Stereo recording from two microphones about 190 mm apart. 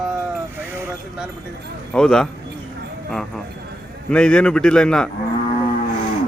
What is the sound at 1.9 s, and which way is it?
Speech, 5° left (ahead or behind).